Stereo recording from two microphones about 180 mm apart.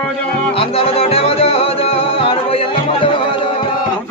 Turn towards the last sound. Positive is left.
turn(degrees=30)  # may be behind; listen again after turning